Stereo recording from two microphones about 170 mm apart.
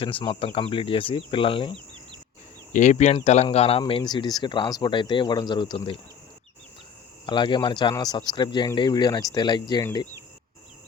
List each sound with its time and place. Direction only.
0.0 s speech: 30° left (ahead or behind)
2.7 s speech: 45° left (ahead or behind); by 6.0 s 30° left (ahead or behind)
7.3 s speech: 25° left (ahead or behind)